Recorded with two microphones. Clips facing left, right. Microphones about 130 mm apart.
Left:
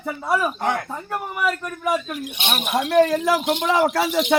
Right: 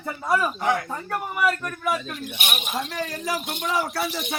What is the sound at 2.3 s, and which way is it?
Speech, 25° left (ahead or behind).